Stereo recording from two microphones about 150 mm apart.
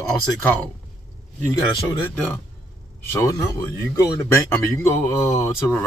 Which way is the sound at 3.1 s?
20° left (ahead or behind).